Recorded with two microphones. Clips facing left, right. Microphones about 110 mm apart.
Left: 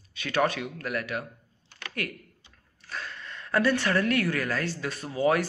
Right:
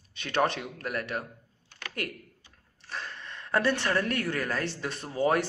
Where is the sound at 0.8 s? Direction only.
35° right (ahead or behind).